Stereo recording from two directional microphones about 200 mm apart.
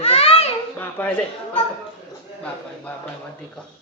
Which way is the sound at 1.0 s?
10° left (ahead or behind).